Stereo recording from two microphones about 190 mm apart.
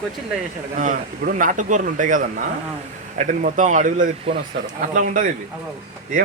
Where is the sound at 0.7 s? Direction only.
45° right (ahead or behind).